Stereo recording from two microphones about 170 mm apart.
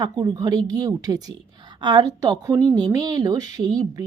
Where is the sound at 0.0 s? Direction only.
25° right (ahead or behind).